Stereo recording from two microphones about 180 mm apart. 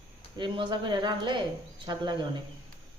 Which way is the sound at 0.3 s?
25° right (ahead or behind).